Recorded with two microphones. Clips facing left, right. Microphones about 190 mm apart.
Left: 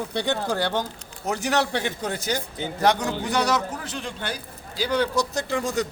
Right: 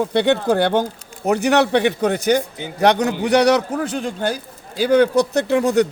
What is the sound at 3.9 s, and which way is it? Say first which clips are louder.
Speech: right 9 dB; 45° right (ahead or behind).